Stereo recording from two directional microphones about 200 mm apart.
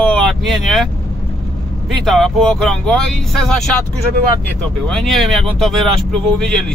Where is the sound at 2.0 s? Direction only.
Centre (ahead or behind).